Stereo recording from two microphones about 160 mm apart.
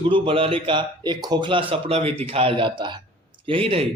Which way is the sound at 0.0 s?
35° right (ahead or behind).